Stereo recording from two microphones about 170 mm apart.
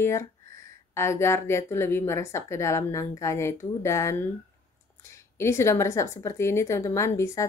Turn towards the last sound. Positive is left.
turn(degrees=15)  # may be behind; listen again after turning